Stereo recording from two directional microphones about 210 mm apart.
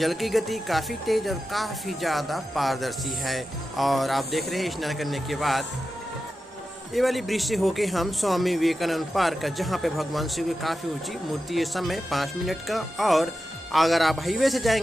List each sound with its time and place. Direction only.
0.0 s speech: centre (ahead or behind)
6.9 s speech: centre (ahead or behind)